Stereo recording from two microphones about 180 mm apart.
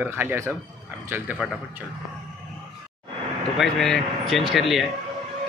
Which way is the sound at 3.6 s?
Centre (ahead or behind).